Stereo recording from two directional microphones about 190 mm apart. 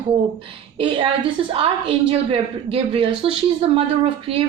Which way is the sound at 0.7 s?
30° right (ahead or behind).